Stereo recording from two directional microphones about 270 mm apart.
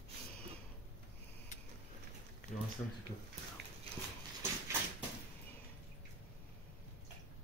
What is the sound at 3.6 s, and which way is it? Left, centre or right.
Horse, right.